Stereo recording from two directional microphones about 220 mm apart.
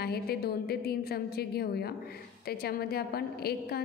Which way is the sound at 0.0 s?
45° left (ahead or behind).